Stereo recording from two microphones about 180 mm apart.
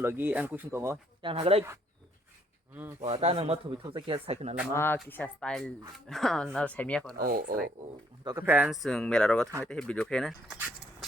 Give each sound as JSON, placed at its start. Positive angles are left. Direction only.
{"t": 0.0, "sound": "speech", "side_deg": -10}
{"t": 1.2, "sound": "speech", "side_deg": -30}
{"t": 3.0, "sound": "speech", "side_deg": -35}
{"t": 4.7, "sound": "a woman's voice", "side_deg": 10}
{"t": 7.2, "sound": "speech", "side_deg": -55}
{"t": 8.2, "sound": "speech", "side_deg": -20}
{"t": 8.4, "sound": "a woman's voice", "side_deg": -5}